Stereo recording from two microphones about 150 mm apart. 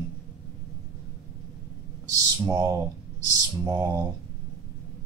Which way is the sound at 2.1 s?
25° right (ahead or behind).